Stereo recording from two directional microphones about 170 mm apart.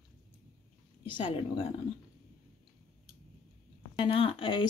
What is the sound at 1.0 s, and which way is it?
Speech, 30° left (ahead or behind).